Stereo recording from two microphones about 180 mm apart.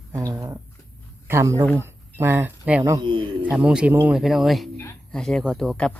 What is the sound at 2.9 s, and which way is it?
Speech, 25° right (ahead or behind).